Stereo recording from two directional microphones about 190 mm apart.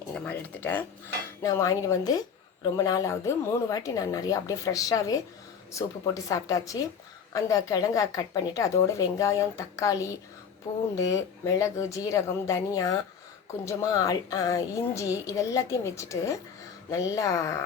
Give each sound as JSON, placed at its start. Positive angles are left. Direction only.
{"t": 0.1, "sound": "cutlery", "side_deg": 10}
{"t": 2.7, "sound": "a woman's voice", "side_deg": 20}
{"t": 6.2, "sound": "a woman's voice", "side_deg": 15}